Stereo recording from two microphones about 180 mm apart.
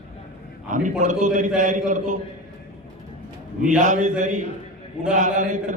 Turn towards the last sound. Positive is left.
turn(degrees=-45)  # may be behind; listen again after turning